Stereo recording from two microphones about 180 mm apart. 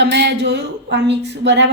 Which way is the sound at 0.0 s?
70° right (ahead or behind).